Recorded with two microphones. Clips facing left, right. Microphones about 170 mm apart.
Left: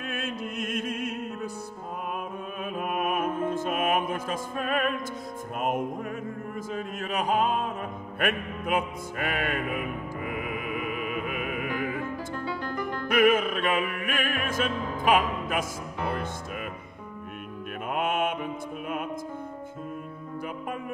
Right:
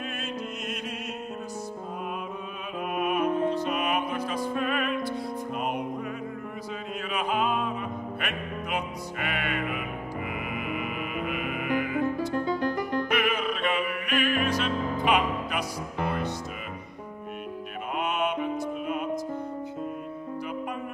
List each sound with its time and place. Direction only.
0.1 s music: 50° left (ahead or behind)
2.8 s music: 50° left (ahead or behind)
17.9 s music: 50° left (ahead or behind)